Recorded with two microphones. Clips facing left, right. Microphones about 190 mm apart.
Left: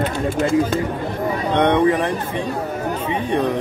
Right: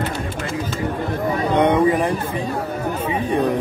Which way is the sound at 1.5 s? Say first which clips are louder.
Even; 10° right (ahead or behind).